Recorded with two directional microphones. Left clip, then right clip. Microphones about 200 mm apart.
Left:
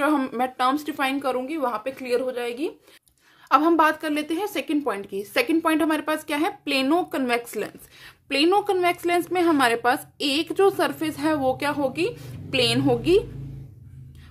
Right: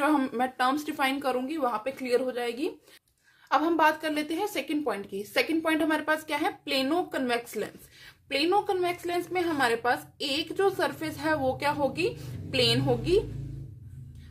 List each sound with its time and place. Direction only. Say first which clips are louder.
0.0 s speech: left 3 dB; 25° left (ahead or behind)
3.4 s a woman's voice: left 5 dB; 30° left (ahead or behind)